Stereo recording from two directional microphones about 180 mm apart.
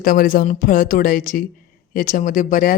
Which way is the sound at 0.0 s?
50° left (ahead or behind).